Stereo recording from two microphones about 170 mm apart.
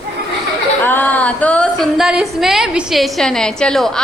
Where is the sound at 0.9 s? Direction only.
10° left (ahead or behind).